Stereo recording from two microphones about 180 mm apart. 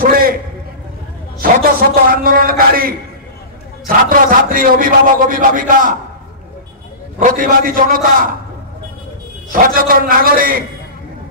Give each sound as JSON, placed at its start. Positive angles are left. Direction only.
{"t": 0.0, "sound": "a man's voice", "side_deg": -55}
{"t": 1.4, "sound": "a man's voice", "side_deg": -55}
{"t": 7.2, "sound": "a man's voice", "side_deg": -50}
{"t": 9.5, "sound": "a man's voice", "side_deg": -55}